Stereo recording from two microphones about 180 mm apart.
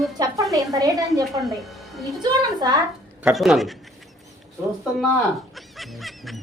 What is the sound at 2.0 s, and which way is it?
Speech, 20° right (ahead or behind).